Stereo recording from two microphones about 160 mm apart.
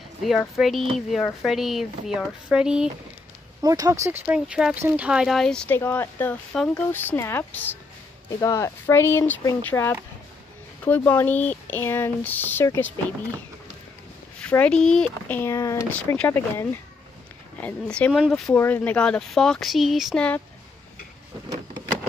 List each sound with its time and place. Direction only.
0.2 s speech: centre (ahead or behind)
3.6 s speech: 20° right (ahead or behind); by 5.8 s 5° left (ahead or behind)
5.8 s speech: 15° left (ahead or behind)
14.4 s speech: 10° left (ahead or behind)